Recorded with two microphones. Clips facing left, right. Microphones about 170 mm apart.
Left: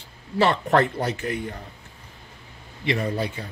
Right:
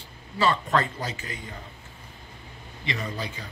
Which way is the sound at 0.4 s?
65° left (ahead or behind).